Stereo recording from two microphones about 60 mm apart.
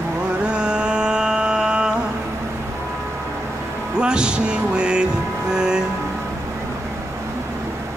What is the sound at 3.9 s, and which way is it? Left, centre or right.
Music, centre.